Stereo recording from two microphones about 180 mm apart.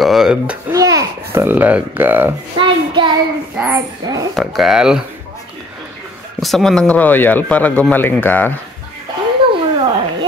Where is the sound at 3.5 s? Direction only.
10° right (ahead or behind).